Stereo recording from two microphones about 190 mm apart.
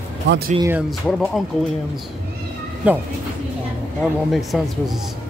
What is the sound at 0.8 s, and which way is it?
Speech, 5° left (ahead or behind).